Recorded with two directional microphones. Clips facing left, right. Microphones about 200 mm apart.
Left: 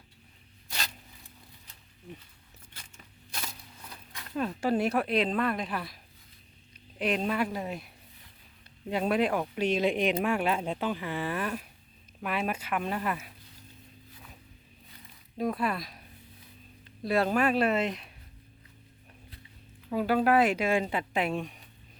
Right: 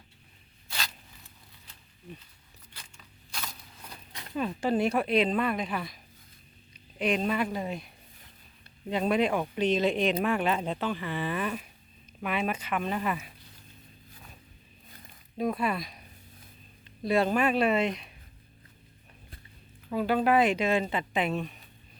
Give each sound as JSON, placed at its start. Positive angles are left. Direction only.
{"t": 4.4, "sound": "a woman's voice", "side_deg": 5}
{"t": 7.0, "sound": "a woman's voice", "side_deg": 0}
{"t": 8.9, "sound": "a woman's voice", "side_deg": 5}
{"t": 15.4, "sound": "a woman's voice", "side_deg": 0}
{"t": 19.9, "sound": "speech", "side_deg": 5}